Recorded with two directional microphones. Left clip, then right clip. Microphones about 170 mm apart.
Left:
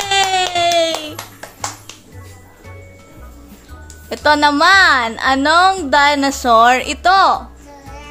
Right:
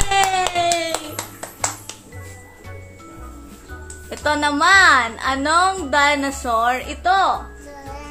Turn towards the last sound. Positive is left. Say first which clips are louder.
# left 6 dB
turn(degrees=75)  # may be behind; listen again after turning